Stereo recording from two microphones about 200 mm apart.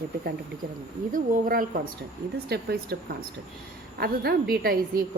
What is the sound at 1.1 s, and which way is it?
A woman's voice, 45° right (ahead or behind).